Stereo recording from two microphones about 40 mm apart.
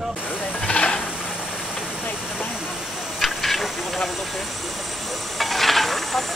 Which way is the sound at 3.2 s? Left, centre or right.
Centre.